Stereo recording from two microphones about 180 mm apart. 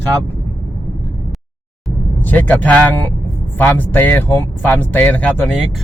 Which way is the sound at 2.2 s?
10° left (ahead or behind).